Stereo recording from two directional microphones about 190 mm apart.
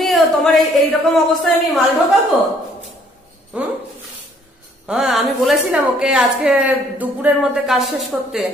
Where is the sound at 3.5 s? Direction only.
5° right (ahead or behind).